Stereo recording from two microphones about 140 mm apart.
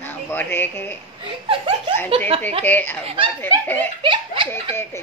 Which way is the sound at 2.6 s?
15° left (ahead or behind).